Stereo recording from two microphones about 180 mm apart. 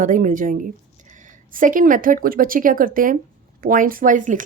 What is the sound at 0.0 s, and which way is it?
Speech, 45° right (ahead or behind).